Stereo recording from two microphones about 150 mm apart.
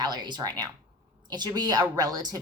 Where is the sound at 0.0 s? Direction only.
30° right (ahead or behind).